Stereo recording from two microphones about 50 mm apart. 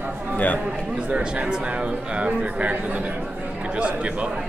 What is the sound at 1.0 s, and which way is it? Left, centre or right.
A man's voice, right.